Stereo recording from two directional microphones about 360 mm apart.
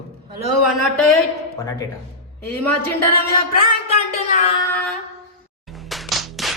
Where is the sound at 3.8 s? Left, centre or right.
Centre.